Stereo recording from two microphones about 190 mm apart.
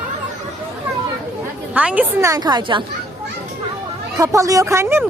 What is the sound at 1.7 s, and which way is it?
A woman's voice, 5° right (ahead or behind).